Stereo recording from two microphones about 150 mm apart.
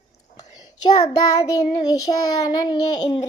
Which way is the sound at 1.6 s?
25° left (ahead or behind).